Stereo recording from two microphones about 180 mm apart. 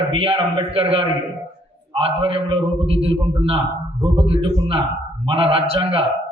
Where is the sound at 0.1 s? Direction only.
30° right (ahead or behind).